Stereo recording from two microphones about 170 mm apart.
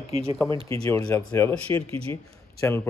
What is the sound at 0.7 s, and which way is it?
Speech, 20° left (ahead or behind).